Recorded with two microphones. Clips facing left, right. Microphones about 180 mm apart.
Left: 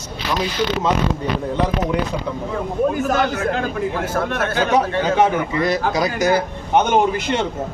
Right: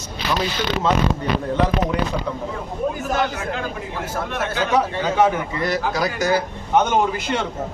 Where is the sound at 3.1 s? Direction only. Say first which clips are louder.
Left 4 dB; 50° left (ahead or behind).